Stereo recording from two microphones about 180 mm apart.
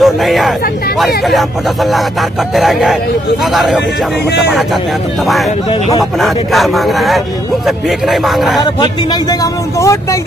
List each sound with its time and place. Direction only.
0.0 s speech: centre (ahead or behind)
2.5 s speech: centre (ahead or behind)
5.7 s speech: 20° left (ahead or behind)
6.1 s speech: centre (ahead or behind)
8.5 s speech: 20° left (ahead or behind)